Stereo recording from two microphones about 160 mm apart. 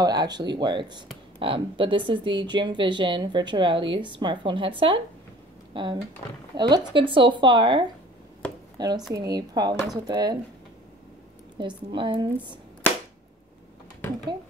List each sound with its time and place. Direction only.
0.0 s speech: 25° right (ahead or behind)
11.5 s speech: 30° right (ahead or behind)